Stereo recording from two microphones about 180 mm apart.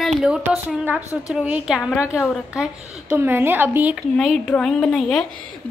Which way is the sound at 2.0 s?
15° left (ahead or behind).